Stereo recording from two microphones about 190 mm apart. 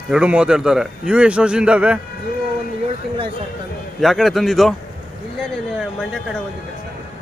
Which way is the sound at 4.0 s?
Centre (ahead or behind).